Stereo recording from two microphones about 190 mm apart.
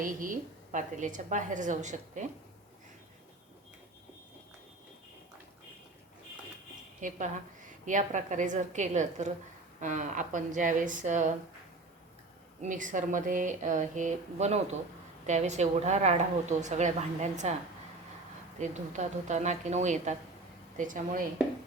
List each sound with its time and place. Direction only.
0.0 s a woman's voice: 45° right (ahead or behind)
7.0 s a woman's voice: 40° right (ahead or behind)
12.6 s a woman's voice: 40° right (ahead or behind)
18.6 s a woman's voice: 40° right (ahead or behind)